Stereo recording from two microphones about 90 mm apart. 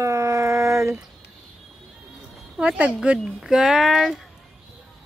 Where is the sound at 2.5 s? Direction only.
15° right (ahead or behind).